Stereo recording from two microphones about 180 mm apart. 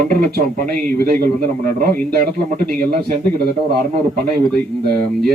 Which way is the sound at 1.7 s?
55° right (ahead or behind).